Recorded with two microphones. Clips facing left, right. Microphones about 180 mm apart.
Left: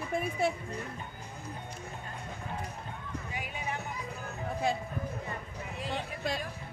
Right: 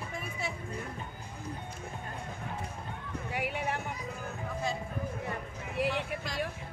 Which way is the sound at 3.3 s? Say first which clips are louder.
Right 6 dB; 65° right (ahead or behind).